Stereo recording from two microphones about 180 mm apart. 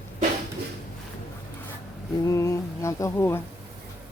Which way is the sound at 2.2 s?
15° left (ahead or behind).